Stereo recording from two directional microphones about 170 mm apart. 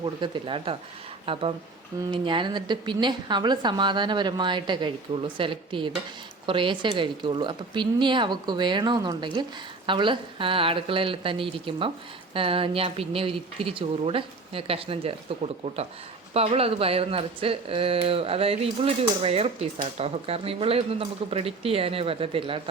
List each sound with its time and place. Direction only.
0.0 s a woman's voice: 30° right (ahead or behind)
16.3 s speech: 35° right (ahead or behind)